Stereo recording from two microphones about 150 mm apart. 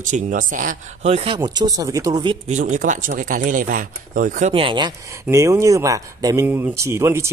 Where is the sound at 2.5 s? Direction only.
55° right (ahead or behind).